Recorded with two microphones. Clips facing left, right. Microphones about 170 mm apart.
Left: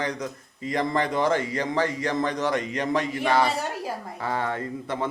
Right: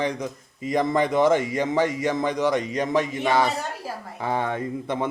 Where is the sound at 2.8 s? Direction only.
5° right (ahead or behind).